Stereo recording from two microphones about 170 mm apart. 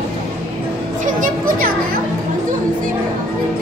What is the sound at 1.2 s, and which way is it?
Children playing, 55° right (ahead or behind).